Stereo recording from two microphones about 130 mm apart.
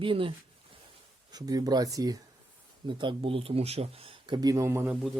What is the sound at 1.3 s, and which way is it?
Speech, 30° right (ahead or behind).